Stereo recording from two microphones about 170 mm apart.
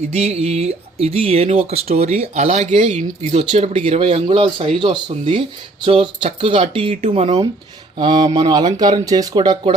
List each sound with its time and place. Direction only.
0.1 s speech: 40° right (ahead or behind)
7.9 s speech: 25° right (ahead or behind)